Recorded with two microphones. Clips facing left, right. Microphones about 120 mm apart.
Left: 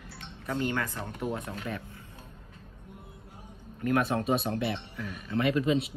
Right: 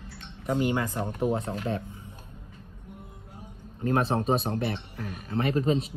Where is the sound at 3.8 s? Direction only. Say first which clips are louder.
Right 2 dB; 30° right (ahead or behind).